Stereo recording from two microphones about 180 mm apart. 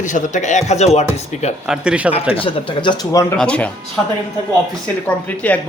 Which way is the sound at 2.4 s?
25° left (ahead or behind).